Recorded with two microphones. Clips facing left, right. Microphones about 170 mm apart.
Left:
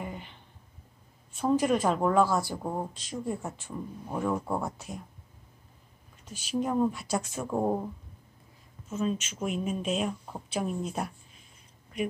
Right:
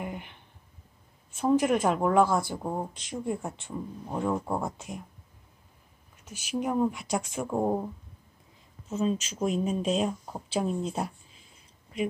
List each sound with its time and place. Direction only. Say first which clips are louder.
0.0 s a sound: right 2 dB; 15° right (ahead or behind)
1.4 s speech: right 1 dB; 15° right (ahead or behind)
2.2 s speech: right 1 dB; 20° right (ahead or behind)
2.6 s speech: right 1 dB; 5° right (ahead or behind)
2.9 s speech: right 2 dB; 15° right (ahead or behind)
6.5 s speech: even; 10° right (ahead or behind)
7.5 s speech: right 1 dB; 5° right (ahead or behind)
8.9 s speech: right 2 dB; 30° right (ahead or behind)